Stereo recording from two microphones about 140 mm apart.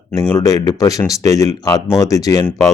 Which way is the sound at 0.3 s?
25° left (ahead or behind).